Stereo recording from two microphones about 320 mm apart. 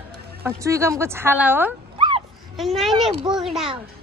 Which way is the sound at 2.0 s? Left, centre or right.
Centre.